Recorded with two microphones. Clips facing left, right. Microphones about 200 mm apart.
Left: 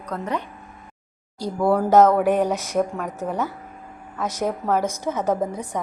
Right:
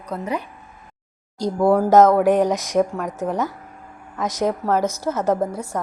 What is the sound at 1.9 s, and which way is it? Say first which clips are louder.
A woman's voice: right 1 dB; 10° left (ahead or behind).